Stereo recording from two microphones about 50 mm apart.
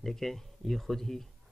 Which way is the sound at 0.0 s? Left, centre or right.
Centre.